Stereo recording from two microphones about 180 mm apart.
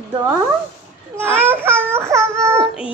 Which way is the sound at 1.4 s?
10° right (ahead or behind).